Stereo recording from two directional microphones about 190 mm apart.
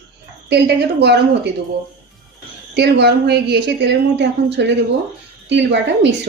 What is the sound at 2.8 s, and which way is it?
A woman's voice, 60° right (ahead or behind).